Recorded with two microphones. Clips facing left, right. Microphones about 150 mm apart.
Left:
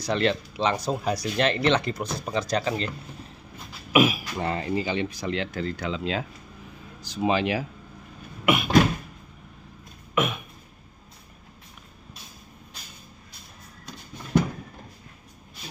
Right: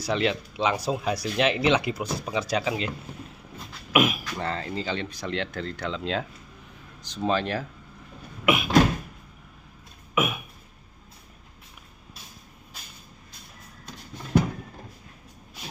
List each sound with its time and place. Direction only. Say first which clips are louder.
0.0 s speech: left 1 dB; 5° right (ahead or behind)
3.9 s speech: left 2 dB; centre (ahead or behind)
4.4 s speech: left 5 dB; 15° left (ahead or behind)
8.5 s speech: even; centre (ahead or behind)
10.1 s a sound: left 1 dB; 5° right (ahead or behind)